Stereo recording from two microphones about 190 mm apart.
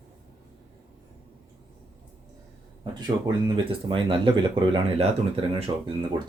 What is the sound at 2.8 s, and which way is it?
Speech, 20° right (ahead or behind).